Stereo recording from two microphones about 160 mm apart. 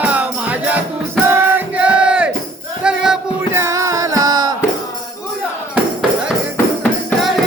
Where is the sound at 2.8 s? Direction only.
5° right (ahead or behind).